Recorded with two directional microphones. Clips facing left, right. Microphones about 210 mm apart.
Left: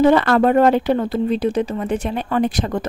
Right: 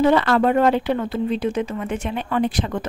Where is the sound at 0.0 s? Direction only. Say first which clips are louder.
Left 3 dB; 50° left (ahead or behind).